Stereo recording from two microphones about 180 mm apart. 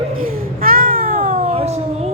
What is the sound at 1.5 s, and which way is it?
Speech, 35° right (ahead or behind).